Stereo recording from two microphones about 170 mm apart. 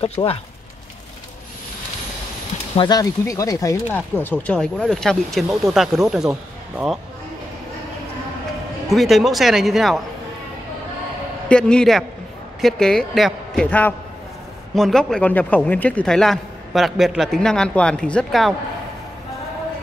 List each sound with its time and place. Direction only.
0.0 s speech: 35° left (ahead or behind)
2.7 s speech: 25° left (ahead or behind); by 6.3 s 5° right (ahead or behind)
8.9 s speech: centre (ahead or behind)
11.4 s speech: 5° left (ahead or behind)